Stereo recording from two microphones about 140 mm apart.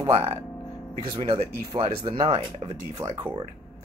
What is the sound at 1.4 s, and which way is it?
Speech, 40° right (ahead or behind).